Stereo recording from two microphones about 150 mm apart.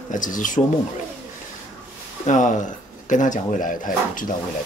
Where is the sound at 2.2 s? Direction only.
55° left (ahead or behind).